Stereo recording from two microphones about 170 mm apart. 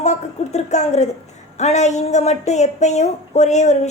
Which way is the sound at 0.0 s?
40° left (ahead or behind).